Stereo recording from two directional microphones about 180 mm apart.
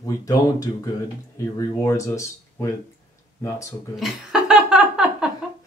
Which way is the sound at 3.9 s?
5° right (ahead or behind).